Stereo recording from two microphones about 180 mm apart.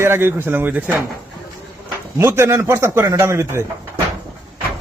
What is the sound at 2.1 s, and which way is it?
A man's voice, 15° right (ahead or behind).